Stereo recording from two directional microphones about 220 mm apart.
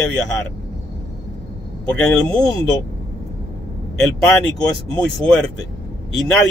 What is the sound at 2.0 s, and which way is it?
Speech, 5° left (ahead or behind).